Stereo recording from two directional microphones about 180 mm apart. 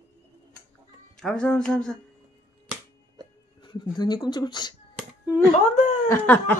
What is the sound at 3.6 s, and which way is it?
Speech, 25° left (ahead or behind).